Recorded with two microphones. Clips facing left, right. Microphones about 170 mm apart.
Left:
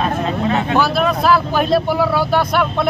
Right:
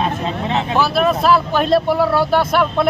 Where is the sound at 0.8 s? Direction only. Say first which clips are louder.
Right 3 dB; centre (ahead or behind).